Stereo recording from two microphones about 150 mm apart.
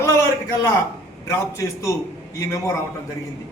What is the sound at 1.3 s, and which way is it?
A man's voice, 20° left (ahead or behind).